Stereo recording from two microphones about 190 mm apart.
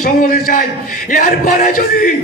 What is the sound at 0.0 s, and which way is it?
A man's voice, 45° left (ahead or behind).